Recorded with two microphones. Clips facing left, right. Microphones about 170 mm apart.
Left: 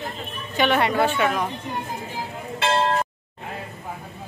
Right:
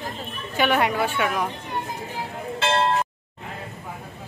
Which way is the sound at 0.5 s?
10° right (ahead or behind).